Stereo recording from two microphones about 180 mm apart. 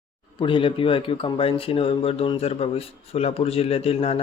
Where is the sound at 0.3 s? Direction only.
30° left (ahead or behind).